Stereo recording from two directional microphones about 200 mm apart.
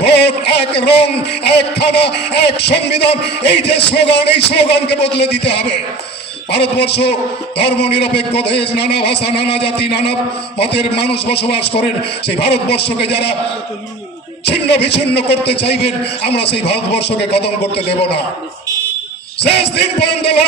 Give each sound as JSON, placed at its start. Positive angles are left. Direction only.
{"t": 0.0, "sound": "a man's voice", "side_deg": 55}
{"t": 14.4, "sound": "a man's voice", "side_deg": 55}
{"t": 19.4, "sound": "a man's voice", "side_deg": 55}